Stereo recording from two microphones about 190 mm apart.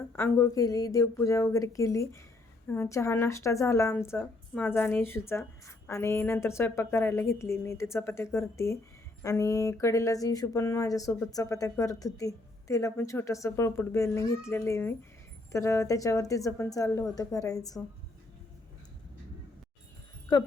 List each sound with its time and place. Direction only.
0.2 s speech: 10° left (ahead or behind)